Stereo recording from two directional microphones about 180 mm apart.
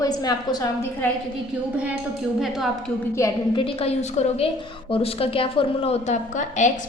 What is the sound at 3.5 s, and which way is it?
A woman's voice, 30° left (ahead or behind).